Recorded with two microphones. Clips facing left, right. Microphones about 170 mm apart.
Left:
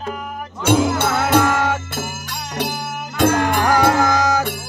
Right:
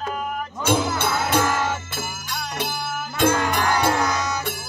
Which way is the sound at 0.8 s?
75° left (ahead or behind).